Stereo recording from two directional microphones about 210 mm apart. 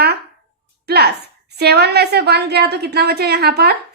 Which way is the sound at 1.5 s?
50° right (ahead or behind).